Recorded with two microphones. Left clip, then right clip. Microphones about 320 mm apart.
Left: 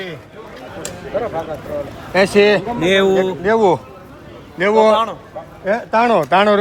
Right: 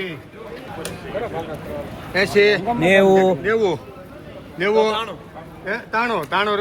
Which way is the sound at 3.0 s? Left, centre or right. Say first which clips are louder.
Right 1 dB; centre.